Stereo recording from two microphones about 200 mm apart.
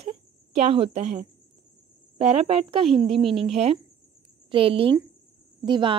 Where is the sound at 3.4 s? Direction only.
30° right (ahead or behind).